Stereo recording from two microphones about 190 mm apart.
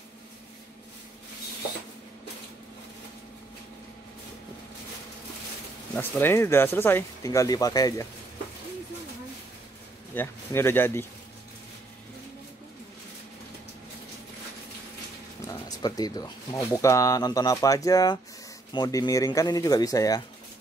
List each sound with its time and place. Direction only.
5.9 s speech: 10° left (ahead or behind)
10.1 s speech: 10° left (ahead or behind)
15.4 s speech: 20° left (ahead or behind)